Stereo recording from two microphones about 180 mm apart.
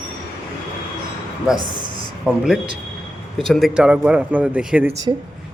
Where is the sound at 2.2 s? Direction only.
5° right (ahead or behind).